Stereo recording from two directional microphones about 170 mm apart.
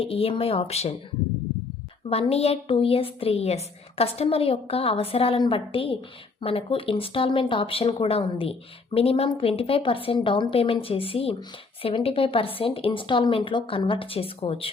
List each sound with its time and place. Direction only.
0.0 s speech: 35° left (ahead or behind)
2.3 s speech: 35° left (ahead or behind)